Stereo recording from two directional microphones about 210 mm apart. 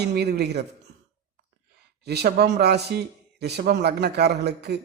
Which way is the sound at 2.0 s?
50° right (ahead or behind).